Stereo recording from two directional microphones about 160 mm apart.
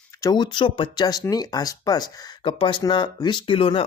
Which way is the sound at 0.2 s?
25° left (ahead or behind).